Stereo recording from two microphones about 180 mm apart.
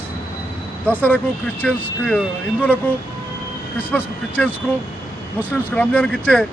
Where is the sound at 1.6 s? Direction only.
5° left (ahead or behind).